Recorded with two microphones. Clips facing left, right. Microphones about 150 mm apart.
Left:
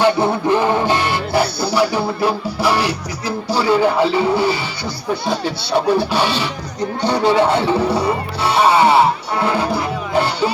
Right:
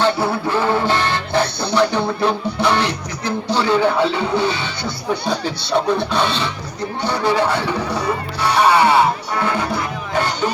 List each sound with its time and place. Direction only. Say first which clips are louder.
0.0 s music: left 3 dB; 20° left (ahead or behind)
7.0 s speech: left 3 dB; 15° left (ahead or behind)